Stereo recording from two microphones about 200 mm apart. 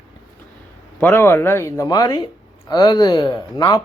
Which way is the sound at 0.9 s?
10° left (ahead or behind).